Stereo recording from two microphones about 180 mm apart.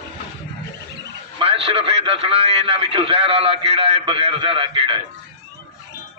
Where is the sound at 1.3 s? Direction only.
30° right (ahead or behind).